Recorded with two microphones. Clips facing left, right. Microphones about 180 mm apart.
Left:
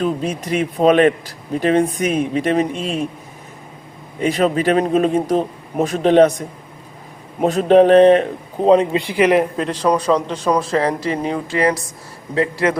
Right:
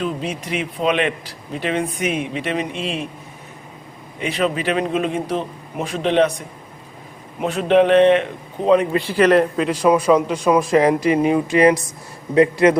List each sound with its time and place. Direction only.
0.0 s a man's voice: 45° left (ahead or behind)
4.2 s a man's voice: 40° left (ahead or behind)
7.3 s a man's voice: 40° left (ahead or behind)
8.9 s a man's voice: 15° left (ahead or behind)
9.6 s a man's voice: 10° right (ahead or behind)